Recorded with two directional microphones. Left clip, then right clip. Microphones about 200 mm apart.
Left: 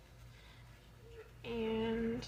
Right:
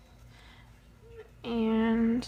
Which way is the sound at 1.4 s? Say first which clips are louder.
Right 8 dB; 50° right (ahead or behind).